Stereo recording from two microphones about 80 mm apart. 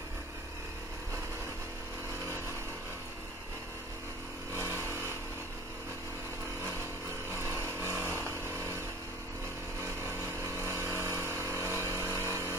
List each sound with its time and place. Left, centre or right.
7.8 s vehicle: right
8.3 s a sound: right
9.8 s vehicle: right